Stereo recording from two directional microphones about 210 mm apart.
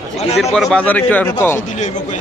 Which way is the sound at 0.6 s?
5° left (ahead or behind).